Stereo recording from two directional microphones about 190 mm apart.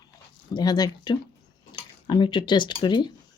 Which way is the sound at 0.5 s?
20° left (ahead or behind).